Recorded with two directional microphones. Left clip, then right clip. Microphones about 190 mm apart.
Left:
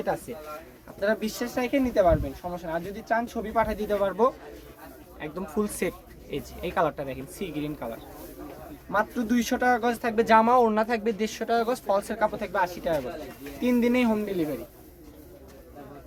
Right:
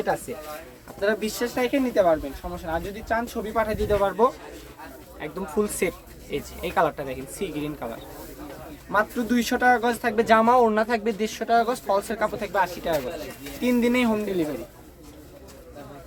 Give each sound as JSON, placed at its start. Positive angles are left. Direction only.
{"t": 0.3, "sound": "speech", "side_deg": 5}
{"t": 8.9, "sound": "speech", "side_deg": 10}